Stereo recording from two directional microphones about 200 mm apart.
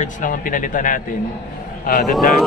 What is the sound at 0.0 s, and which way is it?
Speech, 40° left (ahead or behind).